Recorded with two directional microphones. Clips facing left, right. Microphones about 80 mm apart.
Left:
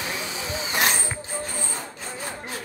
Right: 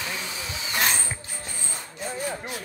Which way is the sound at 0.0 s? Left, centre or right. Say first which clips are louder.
Left 2 dB; centre.